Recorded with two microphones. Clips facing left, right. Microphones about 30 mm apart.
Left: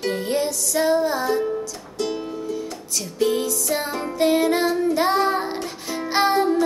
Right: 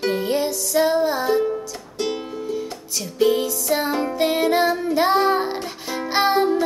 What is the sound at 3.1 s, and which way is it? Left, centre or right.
Music, centre.